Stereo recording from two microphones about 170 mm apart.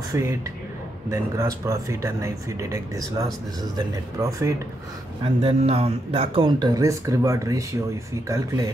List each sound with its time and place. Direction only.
0.1 s a man's voice: 15° right (ahead or behind)
5.2 s a man's voice: 35° right (ahead or behind); by 8.6 s 20° right (ahead or behind)